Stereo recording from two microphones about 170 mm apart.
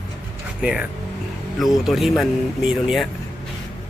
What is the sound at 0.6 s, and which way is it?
Speech, 5° right (ahead or behind).